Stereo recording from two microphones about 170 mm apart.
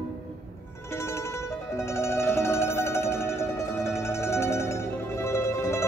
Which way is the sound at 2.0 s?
15° left (ahead or behind).